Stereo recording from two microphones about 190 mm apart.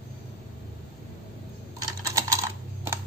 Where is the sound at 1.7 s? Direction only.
15° right (ahead or behind).